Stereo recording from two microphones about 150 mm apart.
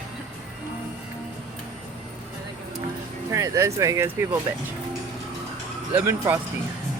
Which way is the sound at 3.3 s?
20° right (ahead or behind).